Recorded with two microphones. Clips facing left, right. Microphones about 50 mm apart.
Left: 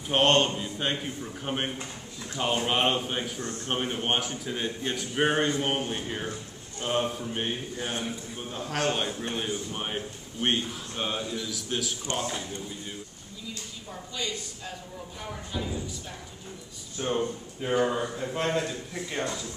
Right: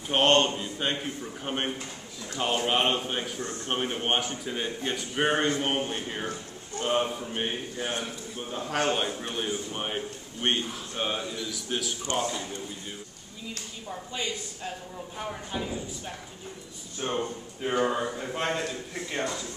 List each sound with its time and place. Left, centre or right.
0.1 s a man's voice: centre
14.1 s speech: right
17.0 s a man's voice: centre